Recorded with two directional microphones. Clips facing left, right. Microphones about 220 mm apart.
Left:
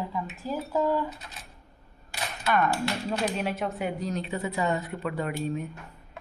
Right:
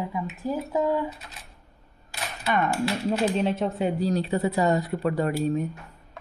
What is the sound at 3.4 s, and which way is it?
Speech, 25° right (ahead or behind).